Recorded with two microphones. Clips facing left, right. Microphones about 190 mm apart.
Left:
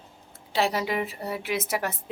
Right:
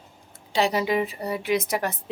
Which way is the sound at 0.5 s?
Centre (ahead or behind).